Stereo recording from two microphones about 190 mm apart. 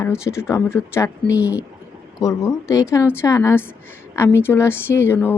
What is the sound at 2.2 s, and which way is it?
Speech, 15° left (ahead or behind).